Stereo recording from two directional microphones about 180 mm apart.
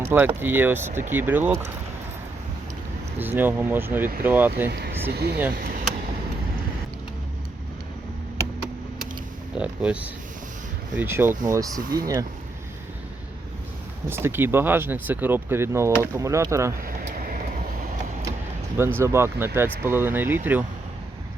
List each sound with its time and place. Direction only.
0.0 s speech: 10° right (ahead or behind)
3.2 s speech: 10° right (ahead or behind)
4.7 s speech: 65° right (ahead or behind)
5.5 s speech: 55° right (ahead or behind)
9.6 s speech: 5° right (ahead or behind)
11.8 s speech: 55° right (ahead or behind)
14.1 s speech: 15° right (ahead or behind)
16.8 s vehicle: 50° right (ahead or behind)
18.8 s speech: 15° right (ahead or behind)